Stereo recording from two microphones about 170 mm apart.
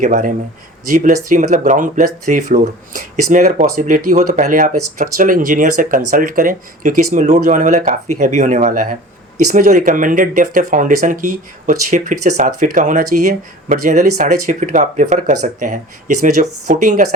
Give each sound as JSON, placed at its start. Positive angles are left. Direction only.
{"t": 0.0, "sound": "speech", "side_deg": -50}